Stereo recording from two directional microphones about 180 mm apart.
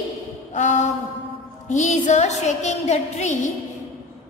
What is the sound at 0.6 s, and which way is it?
A woman's voice, 40° left (ahead or behind).